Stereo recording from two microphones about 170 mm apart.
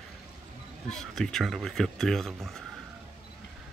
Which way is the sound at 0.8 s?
5° left (ahead or behind).